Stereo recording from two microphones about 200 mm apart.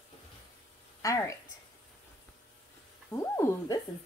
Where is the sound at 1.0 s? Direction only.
15° left (ahead or behind).